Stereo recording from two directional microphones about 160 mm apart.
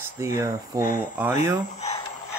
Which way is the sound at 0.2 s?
20° right (ahead or behind).